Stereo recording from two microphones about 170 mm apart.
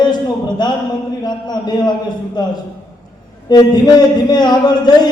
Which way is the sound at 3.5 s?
25° left (ahead or behind).